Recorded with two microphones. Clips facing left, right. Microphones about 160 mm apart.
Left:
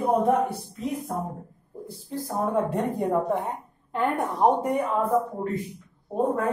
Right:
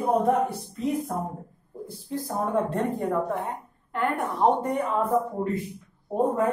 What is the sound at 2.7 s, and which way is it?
Speech, 15° left (ahead or behind).